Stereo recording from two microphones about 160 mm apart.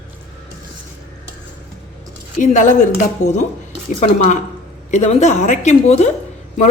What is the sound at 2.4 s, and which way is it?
Speech, 50° left (ahead or behind).